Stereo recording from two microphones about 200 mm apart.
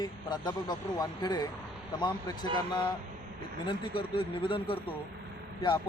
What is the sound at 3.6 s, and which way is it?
Speech, 25° left (ahead or behind).